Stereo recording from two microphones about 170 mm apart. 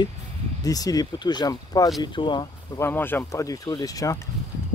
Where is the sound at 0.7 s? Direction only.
20° left (ahead or behind).